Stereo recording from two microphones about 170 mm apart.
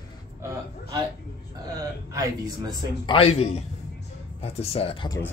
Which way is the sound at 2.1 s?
20° right (ahead or behind).